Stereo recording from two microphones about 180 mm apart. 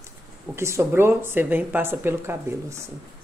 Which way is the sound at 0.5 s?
15° right (ahead or behind).